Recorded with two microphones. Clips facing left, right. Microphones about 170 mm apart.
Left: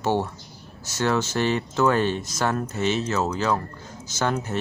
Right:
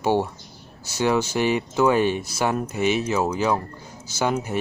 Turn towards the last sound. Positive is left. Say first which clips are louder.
# right 2 dB
turn(degrees=-10)  # may be behind; listen again after turning